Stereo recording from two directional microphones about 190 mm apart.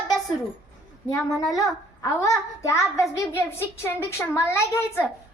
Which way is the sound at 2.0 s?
15° left (ahead or behind).